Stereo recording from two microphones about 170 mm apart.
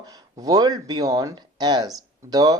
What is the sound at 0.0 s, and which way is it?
Speech, 20° right (ahead or behind).